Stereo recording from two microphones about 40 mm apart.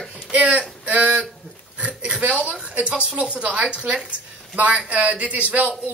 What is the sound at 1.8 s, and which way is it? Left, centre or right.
Speech, right.